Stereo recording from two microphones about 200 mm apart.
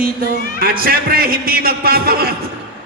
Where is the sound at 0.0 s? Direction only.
45° right (ahead or behind).